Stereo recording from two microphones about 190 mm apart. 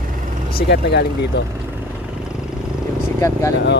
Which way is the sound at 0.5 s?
60° left (ahead or behind).